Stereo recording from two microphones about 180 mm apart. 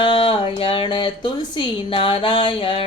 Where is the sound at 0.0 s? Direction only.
30° left (ahead or behind).